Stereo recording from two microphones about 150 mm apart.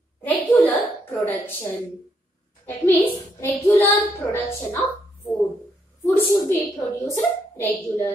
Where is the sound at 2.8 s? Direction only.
10° left (ahead or behind).